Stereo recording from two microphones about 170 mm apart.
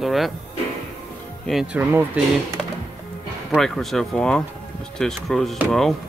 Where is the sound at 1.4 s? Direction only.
Centre (ahead or behind).